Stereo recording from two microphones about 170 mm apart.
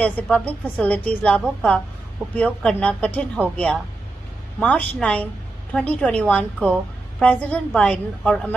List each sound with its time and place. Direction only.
0.0 s a woman's voice: 10° left (ahead or behind)
4.6 s a woman's voice: 10° left (ahead or behind)